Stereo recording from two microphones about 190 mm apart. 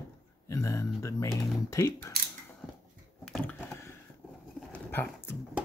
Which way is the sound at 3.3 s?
10° left (ahead or behind).